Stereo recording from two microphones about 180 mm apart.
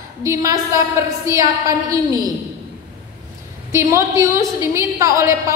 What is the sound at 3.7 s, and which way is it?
A woman's voice, 15° right (ahead or behind).